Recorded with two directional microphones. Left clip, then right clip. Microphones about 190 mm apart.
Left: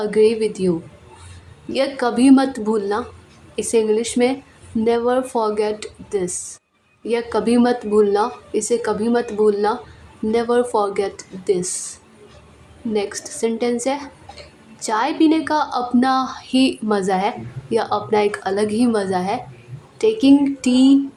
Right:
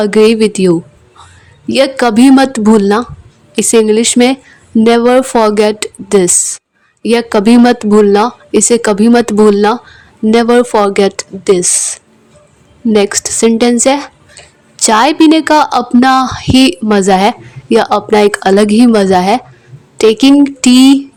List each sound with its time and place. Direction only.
0.0 s a woman's voice: 45° right (ahead or behind)